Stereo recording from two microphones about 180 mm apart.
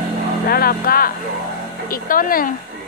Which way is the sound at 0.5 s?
55° left (ahead or behind).